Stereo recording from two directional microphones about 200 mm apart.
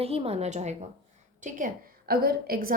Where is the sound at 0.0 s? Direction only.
30° right (ahead or behind).